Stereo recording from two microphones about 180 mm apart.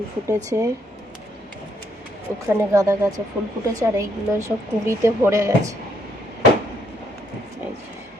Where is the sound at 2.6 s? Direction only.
15° right (ahead or behind).